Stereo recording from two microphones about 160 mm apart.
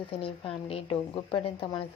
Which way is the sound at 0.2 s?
35° left (ahead or behind).